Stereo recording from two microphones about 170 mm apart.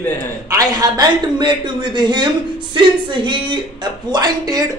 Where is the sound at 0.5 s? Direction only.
20° right (ahead or behind).